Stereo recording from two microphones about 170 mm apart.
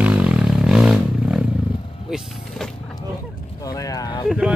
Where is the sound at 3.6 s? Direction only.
20° left (ahead or behind).